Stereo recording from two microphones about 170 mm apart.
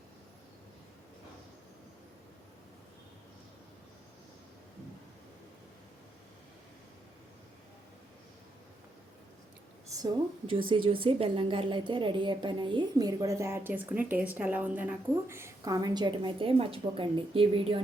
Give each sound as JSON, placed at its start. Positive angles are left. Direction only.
{"t": 10.0, "sound": "a woman's voice", "side_deg": -30}